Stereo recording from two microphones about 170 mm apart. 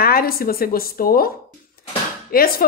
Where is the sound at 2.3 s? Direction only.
60° left (ahead or behind).